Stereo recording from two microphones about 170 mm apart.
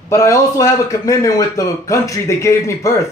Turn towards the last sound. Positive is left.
turn(degrees=15)  # may be behind; listen again after turning